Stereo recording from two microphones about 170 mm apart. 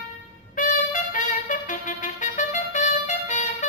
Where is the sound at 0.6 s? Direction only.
50° left (ahead or behind).